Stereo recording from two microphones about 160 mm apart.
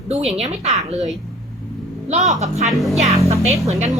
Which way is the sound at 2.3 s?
45° right (ahead or behind).